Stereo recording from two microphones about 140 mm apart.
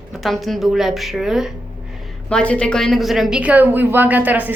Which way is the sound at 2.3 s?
10° left (ahead or behind).